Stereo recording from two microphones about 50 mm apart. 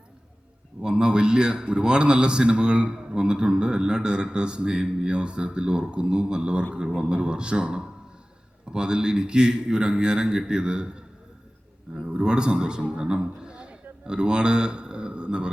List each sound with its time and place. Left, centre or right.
0.8 s a man's voice: centre
12.0 s a man's voice: centre